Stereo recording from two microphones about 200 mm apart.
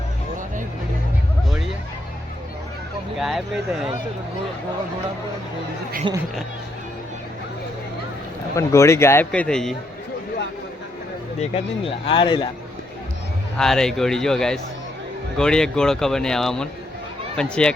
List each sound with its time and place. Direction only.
3.2 s speech: centre (ahead or behind)
8.5 s a man's voice: 15° left (ahead or behind)
11.3 s speech: 30° left (ahead or behind)
13.6 s speech: 5° left (ahead or behind)